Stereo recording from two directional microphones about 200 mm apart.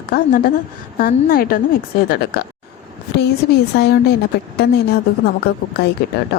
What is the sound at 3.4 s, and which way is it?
Speech, 55° left (ahead or behind).